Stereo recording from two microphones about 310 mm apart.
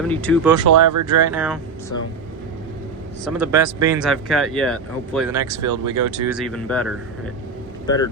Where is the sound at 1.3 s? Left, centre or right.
Centre.